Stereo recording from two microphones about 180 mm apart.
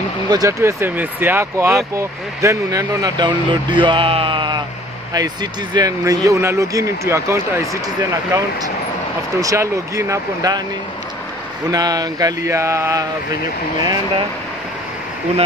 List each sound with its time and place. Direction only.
0.3 s speech: 20° right (ahead or behind)
11.7 s speech: 20° right (ahead or behind)